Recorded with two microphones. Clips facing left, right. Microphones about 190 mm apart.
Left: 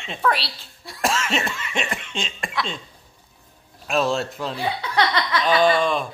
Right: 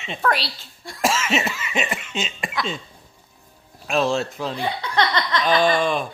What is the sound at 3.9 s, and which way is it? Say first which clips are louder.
Speech: right 1 dB; centre (ahead or behind).